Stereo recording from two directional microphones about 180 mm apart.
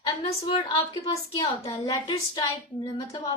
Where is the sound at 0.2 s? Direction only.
35° left (ahead or behind).